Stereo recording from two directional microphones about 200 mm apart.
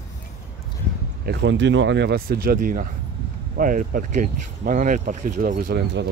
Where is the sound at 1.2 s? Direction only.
60° right (ahead or behind); by 5.8 s 40° right (ahead or behind).